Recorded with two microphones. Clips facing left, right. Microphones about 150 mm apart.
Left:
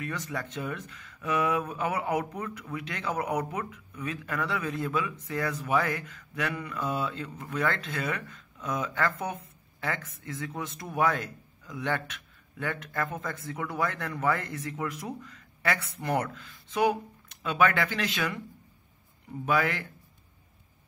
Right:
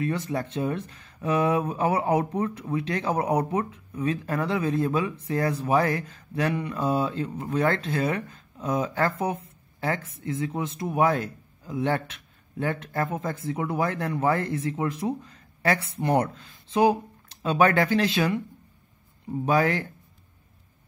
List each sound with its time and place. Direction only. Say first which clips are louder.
0.0 s speech: right 7 dB; 30° right (ahead or behind)
19.4 s speech: right 5 dB; 40° right (ahead or behind)